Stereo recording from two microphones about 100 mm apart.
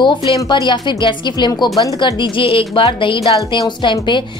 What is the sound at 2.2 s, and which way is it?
A woman's voice, 60° left (ahead or behind).